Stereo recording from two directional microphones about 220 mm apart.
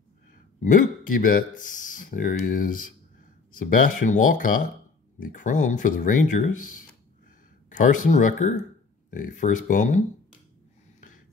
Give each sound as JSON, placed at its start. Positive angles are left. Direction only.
{"t": 0.6, "sound": "speech", "side_deg": 35}
{"t": 7.7, "sound": "speech", "side_deg": 35}